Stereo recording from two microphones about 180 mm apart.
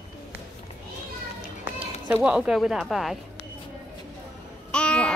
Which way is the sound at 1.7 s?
10° right (ahead or behind).